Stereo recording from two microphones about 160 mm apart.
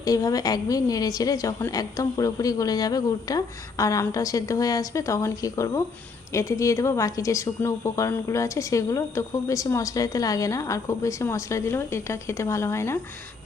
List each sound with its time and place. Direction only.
0.0 s a woman's voice: 25° left (ahead or behind)